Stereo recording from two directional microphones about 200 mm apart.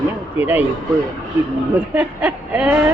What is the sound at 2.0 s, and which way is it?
Speech, 5° right (ahead or behind).